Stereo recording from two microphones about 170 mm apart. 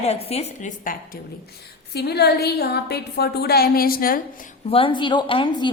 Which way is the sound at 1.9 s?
75° left (ahead or behind).